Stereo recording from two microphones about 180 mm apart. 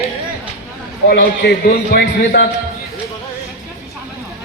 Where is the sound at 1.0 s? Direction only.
65° left (ahead or behind).